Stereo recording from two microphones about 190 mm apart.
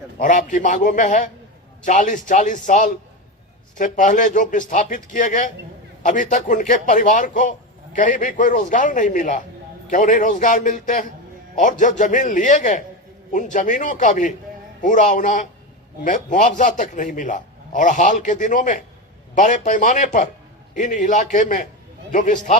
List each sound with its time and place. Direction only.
0.2 s a man's voice: 40° left (ahead or behind)